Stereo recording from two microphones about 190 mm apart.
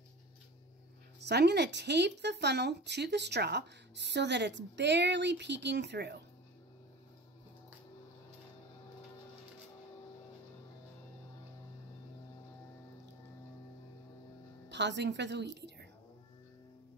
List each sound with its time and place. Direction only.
1.2 s speech: 60° right (ahead or behind)
14.7 s a woman's voice: 65° right (ahead or behind)